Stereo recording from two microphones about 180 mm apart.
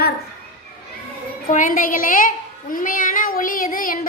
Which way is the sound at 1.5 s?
45° left (ahead or behind).